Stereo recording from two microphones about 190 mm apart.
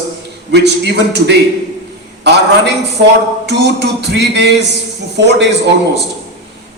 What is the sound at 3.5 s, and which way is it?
A man's voice, 65° right (ahead or behind).